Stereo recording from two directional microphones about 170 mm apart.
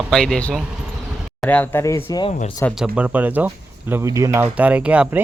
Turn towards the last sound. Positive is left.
turn(degrees=-5)  # may be behind; listen again after turning